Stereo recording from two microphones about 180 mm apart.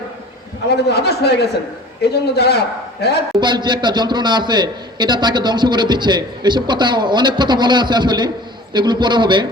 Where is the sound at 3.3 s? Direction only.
25° right (ahead or behind).